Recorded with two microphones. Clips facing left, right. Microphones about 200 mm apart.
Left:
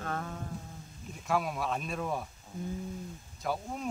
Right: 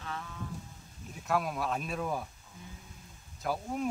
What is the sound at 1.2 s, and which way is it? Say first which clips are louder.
Speech: even; centre (ahead or behind).